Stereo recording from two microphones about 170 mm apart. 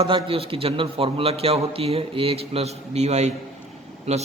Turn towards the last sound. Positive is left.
turn(degrees=-40)  # may be behind; listen again after turning